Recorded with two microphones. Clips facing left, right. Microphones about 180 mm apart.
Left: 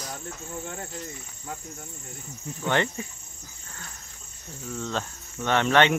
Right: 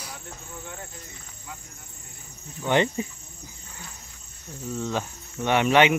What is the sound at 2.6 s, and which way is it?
Speech, 15° right (ahead or behind).